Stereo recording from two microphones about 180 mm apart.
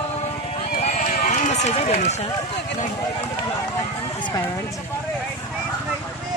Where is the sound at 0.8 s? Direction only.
40° left (ahead or behind).